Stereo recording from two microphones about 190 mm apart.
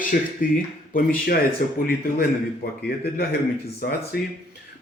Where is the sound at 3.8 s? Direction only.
50° left (ahead or behind).